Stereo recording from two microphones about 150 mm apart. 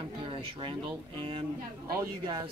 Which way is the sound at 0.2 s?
35° right (ahead or behind).